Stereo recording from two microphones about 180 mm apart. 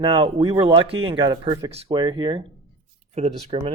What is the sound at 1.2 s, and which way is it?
Speech, 20° right (ahead or behind).